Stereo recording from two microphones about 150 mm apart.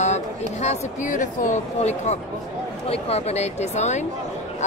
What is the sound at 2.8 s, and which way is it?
A woman's voice, 40° left (ahead or behind).